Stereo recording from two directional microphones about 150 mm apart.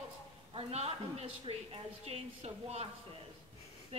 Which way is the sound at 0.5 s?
40° right (ahead or behind).